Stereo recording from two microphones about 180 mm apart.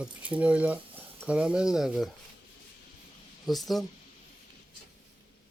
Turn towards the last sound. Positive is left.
turn(degrees=0)  # may be behind; listen again after turning